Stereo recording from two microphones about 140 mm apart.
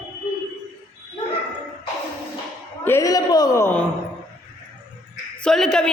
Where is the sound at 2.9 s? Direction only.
20° left (ahead or behind).